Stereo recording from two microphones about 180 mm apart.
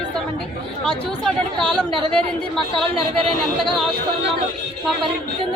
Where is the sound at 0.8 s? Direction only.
5° left (ahead or behind).